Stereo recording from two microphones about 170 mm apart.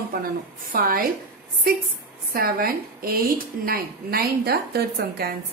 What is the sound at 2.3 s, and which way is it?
A woman's voice, 55° right (ahead or behind).